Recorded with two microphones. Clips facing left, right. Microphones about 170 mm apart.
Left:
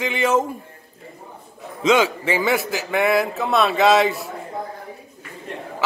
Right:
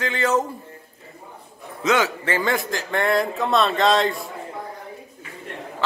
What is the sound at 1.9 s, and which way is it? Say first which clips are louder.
A man's voice: left 3 dB; 15° left (ahead or behind).